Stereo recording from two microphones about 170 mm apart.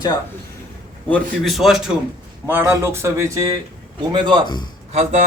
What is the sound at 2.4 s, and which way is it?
A man's voice, 15° right (ahead or behind).